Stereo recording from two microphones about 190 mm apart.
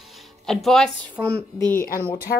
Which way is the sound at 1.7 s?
50° left (ahead or behind).